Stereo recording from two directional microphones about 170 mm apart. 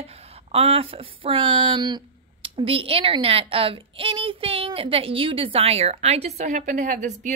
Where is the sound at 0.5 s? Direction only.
35° right (ahead or behind).